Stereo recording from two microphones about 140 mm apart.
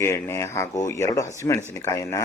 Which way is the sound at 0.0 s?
20° left (ahead or behind).